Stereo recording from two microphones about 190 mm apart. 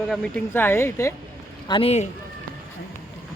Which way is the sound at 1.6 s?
30° left (ahead or behind).